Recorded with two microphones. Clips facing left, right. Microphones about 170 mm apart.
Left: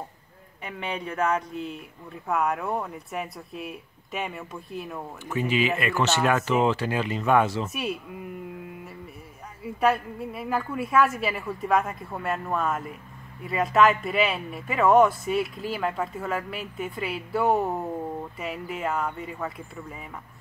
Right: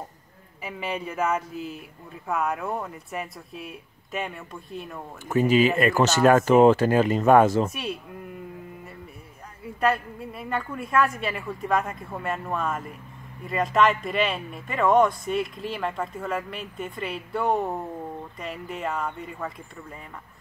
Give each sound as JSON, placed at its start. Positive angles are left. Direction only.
{"t": 0.6, "sound": "speech", "side_deg": -5}
{"t": 5.3, "sound": "speech", "side_deg": -40}
{"t": 7.7, "sound": "speech", "side_deg": 0}
{"t": 9.6, "sound": "speech", "side_deg": 0}